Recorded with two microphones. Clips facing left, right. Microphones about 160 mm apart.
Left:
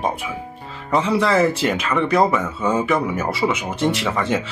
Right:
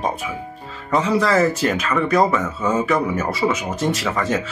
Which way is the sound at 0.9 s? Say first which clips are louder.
Even; 25° left (ahead or behind).